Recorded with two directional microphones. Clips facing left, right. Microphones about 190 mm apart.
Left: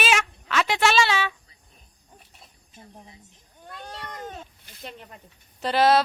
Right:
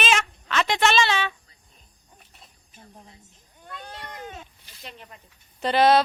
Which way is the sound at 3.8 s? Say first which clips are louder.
Left 2 dB; 50° left (ahead or behind).